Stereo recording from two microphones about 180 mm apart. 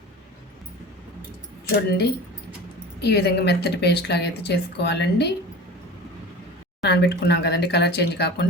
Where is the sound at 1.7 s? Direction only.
60° left (ahead or behind).